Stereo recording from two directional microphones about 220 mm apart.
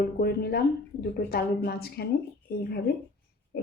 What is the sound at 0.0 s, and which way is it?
Speech, 45° left (ahead or behind).